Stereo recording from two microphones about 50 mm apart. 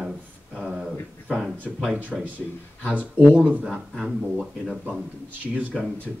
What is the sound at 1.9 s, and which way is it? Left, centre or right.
Speech, right.